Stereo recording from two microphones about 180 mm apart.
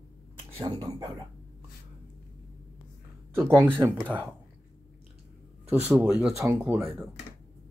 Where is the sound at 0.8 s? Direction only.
20° right (ahead or behind).